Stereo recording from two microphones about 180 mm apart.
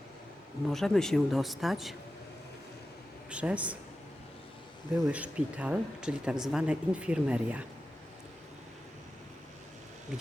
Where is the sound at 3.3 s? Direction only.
5° right (ahead or behind).